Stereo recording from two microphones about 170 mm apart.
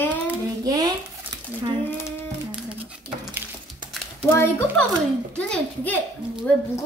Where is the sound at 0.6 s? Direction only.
20° right (ahead or behind).